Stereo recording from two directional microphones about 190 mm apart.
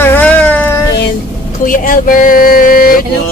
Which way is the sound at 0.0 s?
10° left (ahead or behind).